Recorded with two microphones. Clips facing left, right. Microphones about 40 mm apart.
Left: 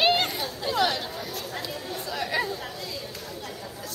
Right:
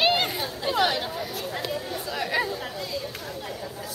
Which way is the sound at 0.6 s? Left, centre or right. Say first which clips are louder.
Right 1 dB; centre.